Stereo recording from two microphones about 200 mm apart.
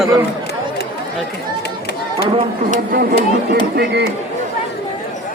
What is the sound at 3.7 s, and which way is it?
Speech, 55° right (ahead or behind).